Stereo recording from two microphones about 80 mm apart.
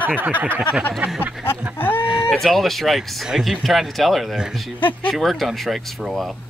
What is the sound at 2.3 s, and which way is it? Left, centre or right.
Speech, centre.